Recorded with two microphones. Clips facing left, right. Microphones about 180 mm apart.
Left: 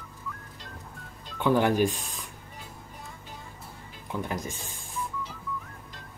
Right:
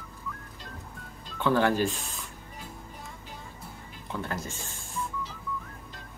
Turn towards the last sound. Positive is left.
turn(degrees=15)  # may be behind; listen again after turning